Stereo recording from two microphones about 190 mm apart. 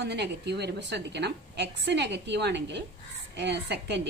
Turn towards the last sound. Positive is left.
turn(degrees=-65)  # may be behind; listen again after turning